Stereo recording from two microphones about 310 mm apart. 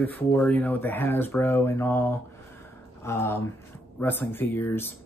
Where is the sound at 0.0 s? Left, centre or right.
Centre.